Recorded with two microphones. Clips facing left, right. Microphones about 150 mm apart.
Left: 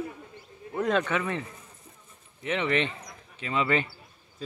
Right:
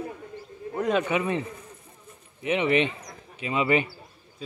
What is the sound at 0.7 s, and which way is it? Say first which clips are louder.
Speech: right 2 dB; 10° right (ahead or behind).